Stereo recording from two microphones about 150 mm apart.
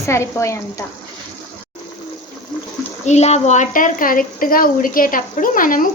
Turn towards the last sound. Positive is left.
turn(degrees=65)  # may be behind; listen again after turning